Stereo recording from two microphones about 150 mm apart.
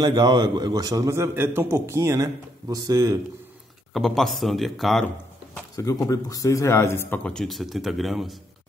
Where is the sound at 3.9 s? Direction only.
Centre (ahead or behind).